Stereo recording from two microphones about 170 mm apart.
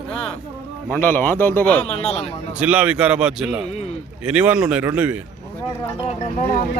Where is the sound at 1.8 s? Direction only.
40° left (ahead or behind).